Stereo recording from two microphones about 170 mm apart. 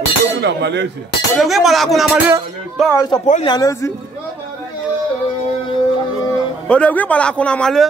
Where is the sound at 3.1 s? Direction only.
45° left (ahead or behind).